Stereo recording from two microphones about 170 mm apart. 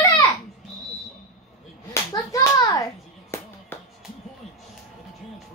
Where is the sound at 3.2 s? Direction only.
15° left (ahead or behind).